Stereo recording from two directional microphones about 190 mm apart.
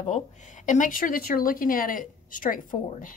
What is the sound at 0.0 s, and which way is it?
Speech, 40° left (ahead or behind).